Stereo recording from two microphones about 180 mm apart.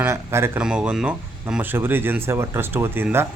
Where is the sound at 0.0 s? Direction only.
15° right (ahead or behind).